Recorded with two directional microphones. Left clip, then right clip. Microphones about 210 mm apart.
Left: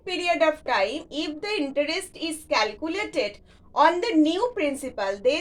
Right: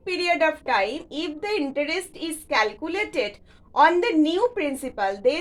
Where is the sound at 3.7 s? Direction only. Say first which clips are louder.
Right 2 dB; 25° right (ahead or behind).